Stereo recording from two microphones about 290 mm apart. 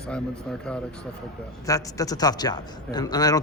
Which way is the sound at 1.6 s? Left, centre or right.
Centre.